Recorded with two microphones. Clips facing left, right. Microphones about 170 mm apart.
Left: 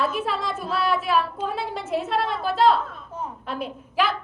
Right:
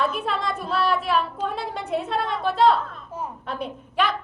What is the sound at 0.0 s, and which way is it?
A woman's voice, centre (ahead or behind).